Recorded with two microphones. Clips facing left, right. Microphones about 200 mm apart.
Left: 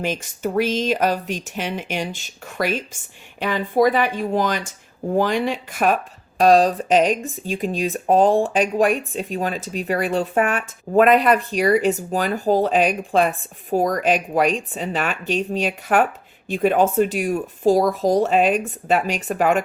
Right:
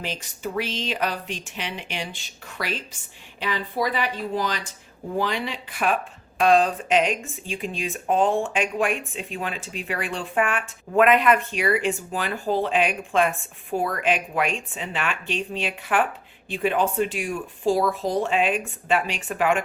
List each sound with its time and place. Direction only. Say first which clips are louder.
0.0 s speech: left 7 dB; 50° left (ahead or behind)